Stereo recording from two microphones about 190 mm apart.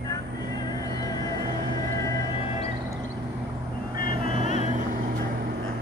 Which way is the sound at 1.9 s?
15° left (ahead or behind).